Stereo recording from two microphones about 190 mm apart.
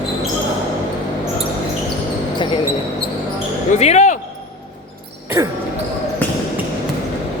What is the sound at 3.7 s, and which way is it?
Basketball bounce, 35° left (ahead or behind).